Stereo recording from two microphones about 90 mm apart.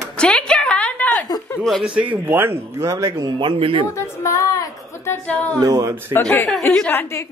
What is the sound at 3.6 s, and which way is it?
Speech, 90° right.